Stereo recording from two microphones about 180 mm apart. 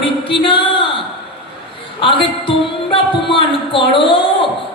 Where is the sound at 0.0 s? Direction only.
30° left (ahead or behind).